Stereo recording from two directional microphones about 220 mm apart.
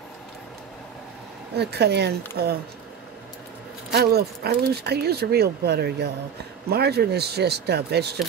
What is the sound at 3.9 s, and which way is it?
Speech, 45° right (ahead or behind).